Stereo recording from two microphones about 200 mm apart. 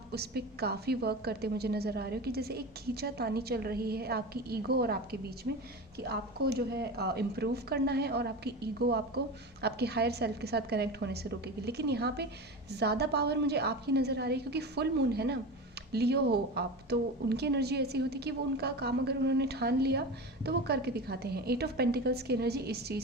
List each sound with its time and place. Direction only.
0.1 s a woman's voice: 55° right (ahead or behind)